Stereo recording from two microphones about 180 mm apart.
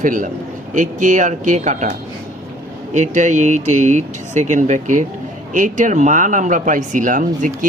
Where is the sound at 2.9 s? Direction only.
40° right (ahead or behind).